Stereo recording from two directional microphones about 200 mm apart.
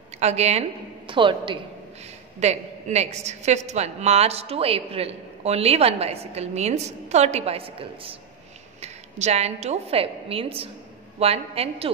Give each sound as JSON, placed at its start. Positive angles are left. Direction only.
{"t": 0.2, "sound": "a woman's voice", "side_deg": -35}